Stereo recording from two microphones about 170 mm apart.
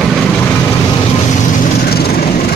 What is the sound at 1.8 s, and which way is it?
Vehicle, 65° left (ahead or behind).